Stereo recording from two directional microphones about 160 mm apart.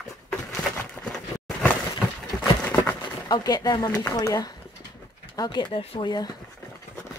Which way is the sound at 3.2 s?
25° left (ahead or behind).